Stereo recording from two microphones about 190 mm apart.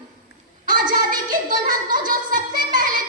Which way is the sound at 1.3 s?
45° right (ahead or behind).